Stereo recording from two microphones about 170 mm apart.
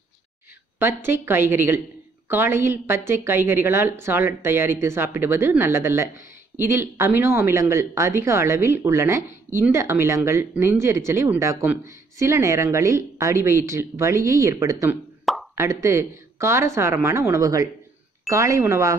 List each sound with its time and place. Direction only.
0.7 s speech: 15° right (ahead or behind)